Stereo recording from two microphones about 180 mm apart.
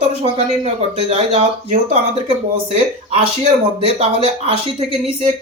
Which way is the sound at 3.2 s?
35° right (ahead or behind).